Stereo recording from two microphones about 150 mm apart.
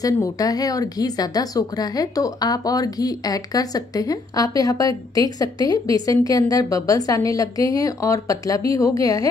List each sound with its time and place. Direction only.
0.0 s speech: 25° left (ahead or behind)